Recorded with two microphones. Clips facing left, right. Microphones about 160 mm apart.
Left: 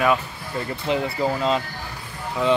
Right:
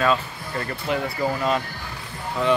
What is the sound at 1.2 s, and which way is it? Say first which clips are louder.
Speech: left 1 dB; 20° left (ahead or behind).